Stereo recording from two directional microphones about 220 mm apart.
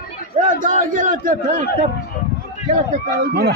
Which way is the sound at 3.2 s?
45° right (ahead or behind).